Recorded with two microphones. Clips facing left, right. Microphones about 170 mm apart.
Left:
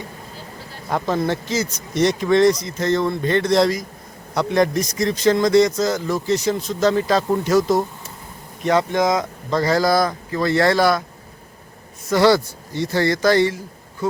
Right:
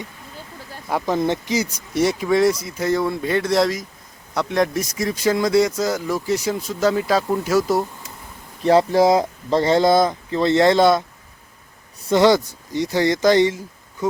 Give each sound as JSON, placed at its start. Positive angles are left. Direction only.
{"t": 0.9, "sound": "a man's voice", "side_deg": -10}
{"t": 8.6, "sound": "speech", "side_deg": -30}
{"t": 12.0, "sound": "a man's voice", "side_deg": -20}